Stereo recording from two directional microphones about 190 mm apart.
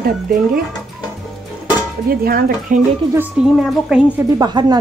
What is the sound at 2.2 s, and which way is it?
Speech, 50° right (ahead or behind).